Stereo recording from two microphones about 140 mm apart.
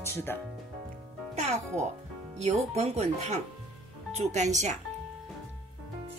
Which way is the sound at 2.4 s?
50° right (ahead or behind).